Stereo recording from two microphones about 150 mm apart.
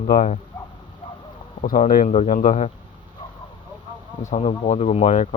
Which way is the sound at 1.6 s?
65° left (ahead or behind).